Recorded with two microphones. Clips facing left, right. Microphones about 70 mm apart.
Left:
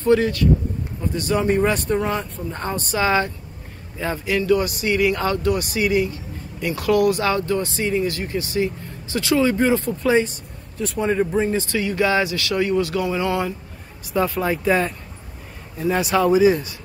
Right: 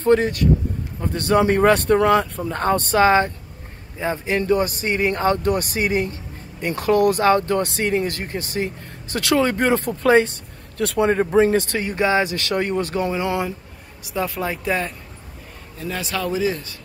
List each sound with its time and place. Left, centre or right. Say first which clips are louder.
0.0 s speech: even; right
1.0 s speech: right 3 dB; right
2.6 s speech: right 6 dB; right
4.3 s speech: left 1 dB; right
10.8 s speech: right 4 dB; right
11.1 s speech: right 3 dB; right
11.8 s speech: even; right
13.1 s speech: left 1 dB; right
14.0 s speech: left 3 dB; centre
15.9 s speech: left 8 dB; centre